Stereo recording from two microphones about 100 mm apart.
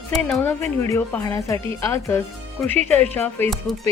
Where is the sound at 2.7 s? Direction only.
20° left (ahead or behind).